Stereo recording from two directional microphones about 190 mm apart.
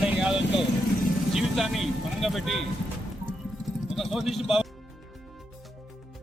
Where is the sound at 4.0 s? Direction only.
Centre (ahead or behind).